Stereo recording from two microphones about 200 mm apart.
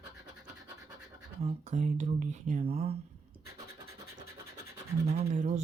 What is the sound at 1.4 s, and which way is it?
Speech, 35° right (ahead or behind).